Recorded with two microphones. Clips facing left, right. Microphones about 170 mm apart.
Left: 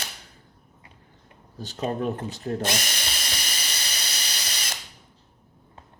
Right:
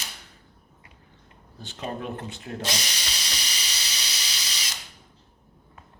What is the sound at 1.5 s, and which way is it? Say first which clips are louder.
Speech: left 6 dB; 40° left (ahead or behind).